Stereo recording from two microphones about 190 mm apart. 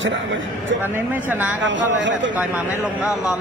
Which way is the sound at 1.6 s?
80° right.